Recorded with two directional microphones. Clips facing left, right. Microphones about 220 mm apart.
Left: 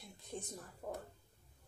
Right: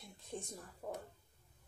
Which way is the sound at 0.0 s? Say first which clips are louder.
Even; centre (ahead or behind).